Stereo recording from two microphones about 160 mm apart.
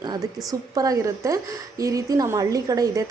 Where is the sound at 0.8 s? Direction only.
20° right (ahead or behind).